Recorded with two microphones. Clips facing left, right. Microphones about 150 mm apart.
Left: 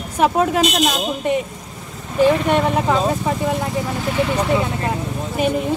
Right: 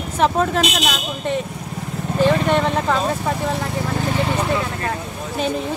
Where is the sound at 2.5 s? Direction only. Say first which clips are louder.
Left 1 dB; 10° left (ahead or behind).